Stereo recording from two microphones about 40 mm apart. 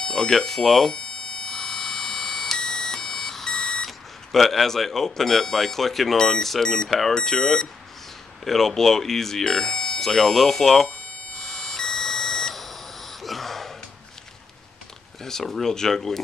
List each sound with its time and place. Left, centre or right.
0.0 s speech: centre
0.9 s alarm: left; by 6.1 s centre
6.1 s speech: centre
6.9 s speech: centre
7.2 s speech: centre
11.3 s beep: centre
15.2 s speech: centre